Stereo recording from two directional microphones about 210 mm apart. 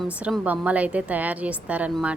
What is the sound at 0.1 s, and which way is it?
A woman's voice, 5° right (ahead or behind).